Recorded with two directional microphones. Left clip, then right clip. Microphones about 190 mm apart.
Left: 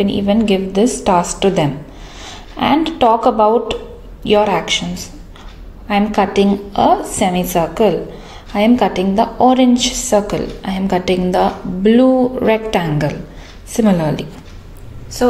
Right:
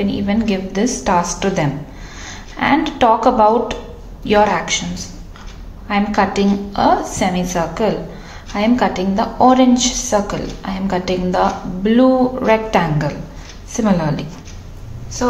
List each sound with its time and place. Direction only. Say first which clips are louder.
0.0 s a woman's voice: left 4 dB; 30° left (ahead or behind)